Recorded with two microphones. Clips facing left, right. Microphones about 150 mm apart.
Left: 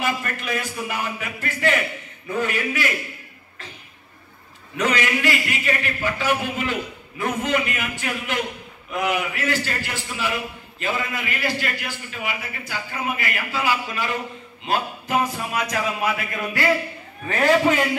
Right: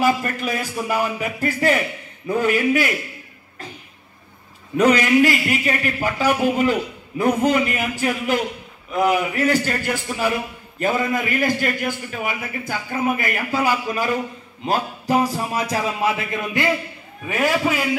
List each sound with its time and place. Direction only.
0.0 s a man's voice: 40° right (ahead or behind)
4.7 s a man's voice: 45° right (ahead or behind); by 16.6 s 25° right (ahead or behind)
17.3 s a man's voice: 10° right (ahead or behind)